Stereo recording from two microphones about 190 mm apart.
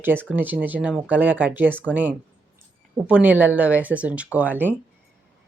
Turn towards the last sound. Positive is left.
turn(degrees=-10)  # may be behind; listen again after turning